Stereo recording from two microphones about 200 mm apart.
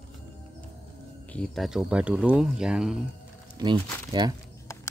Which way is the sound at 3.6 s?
20° right (ahead or behind).